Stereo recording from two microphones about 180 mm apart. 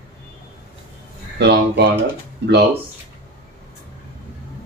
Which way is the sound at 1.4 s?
70° right (ahead or behind).